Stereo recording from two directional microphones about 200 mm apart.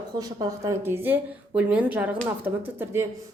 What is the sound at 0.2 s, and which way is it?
Speech, 20° right (ahead or behind).